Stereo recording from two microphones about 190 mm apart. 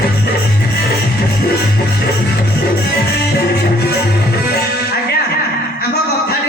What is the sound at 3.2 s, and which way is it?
Music, 55° left (ahead or behind).